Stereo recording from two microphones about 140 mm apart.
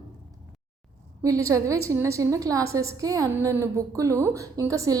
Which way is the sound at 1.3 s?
25° right (ahead or behind).